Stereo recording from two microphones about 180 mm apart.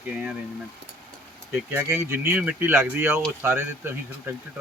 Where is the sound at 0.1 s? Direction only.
5° right (ahead or behind).